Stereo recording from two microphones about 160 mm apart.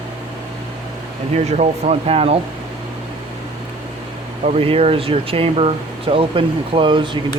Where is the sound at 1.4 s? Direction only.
45° right (ahead or behind).